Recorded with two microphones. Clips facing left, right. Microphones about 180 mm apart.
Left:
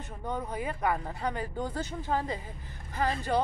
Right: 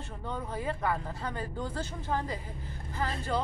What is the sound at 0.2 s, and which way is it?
A woman's voice, 15° left (ahead or behind).